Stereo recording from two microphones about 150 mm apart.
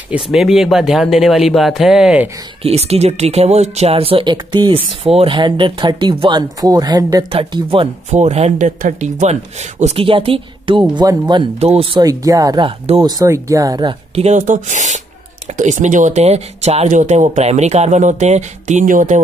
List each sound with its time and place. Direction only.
0.1 s speech: centre (ahead or behind)
2.6 s speech: 45° right (ahead or behind); by 7.2 s 25° right (ahead or behind)
7.2 s speech: 35° right (ahead or behind)
14.1 s speech: 50° right (ahead or behind)